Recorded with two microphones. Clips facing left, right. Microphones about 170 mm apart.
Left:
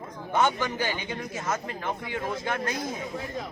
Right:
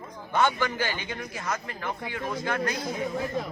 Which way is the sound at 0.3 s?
20° left (ahead or behind).